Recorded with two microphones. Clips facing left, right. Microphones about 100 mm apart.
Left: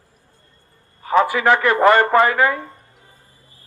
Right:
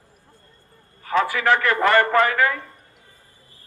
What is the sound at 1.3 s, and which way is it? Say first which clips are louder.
A man's voice: left 3 dB; 20° left (ahead or behind).